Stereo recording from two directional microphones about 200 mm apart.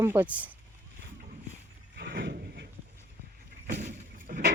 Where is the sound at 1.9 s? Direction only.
50° right (ahead or behind).